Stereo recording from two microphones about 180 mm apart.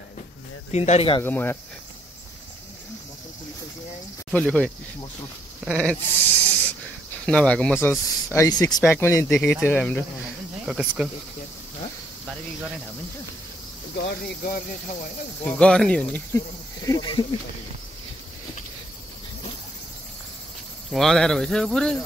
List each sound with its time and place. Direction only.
0.7 s speech: 35° left (ahead or behind)
1.2 s speech: 10° left (ahead or behind)
4.3 s speech: 5° left (ahead or behind)
5.7 s a sound: 5° left (ahead or behind)
7.2 s speech: 5° left (ahead or behind)
10.6 s speech: 5° right (ahead or behind)
13.9 s speech: 60° left (ahead or behind)
15.4 s speech: 5° left (ahead or behind)
16.8 s speech: 20° left (ahead or behind)
20.9 s speech: centre (ahead or behind)